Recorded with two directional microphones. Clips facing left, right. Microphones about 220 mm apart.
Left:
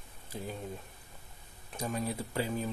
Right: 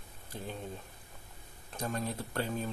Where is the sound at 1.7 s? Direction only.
10° left (ahead or behind).